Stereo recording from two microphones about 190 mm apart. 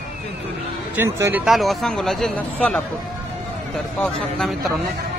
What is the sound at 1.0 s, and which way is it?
Speech, 15° right (ahead or behind).